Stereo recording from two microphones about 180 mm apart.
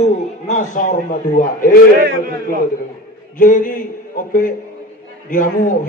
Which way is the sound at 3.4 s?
45° left (ahead or behind).